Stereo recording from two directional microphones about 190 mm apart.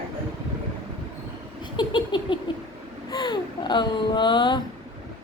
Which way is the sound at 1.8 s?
25° left (ahead or behind).